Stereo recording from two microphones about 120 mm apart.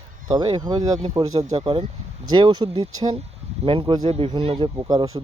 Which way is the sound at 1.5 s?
45° right (ahead or behind).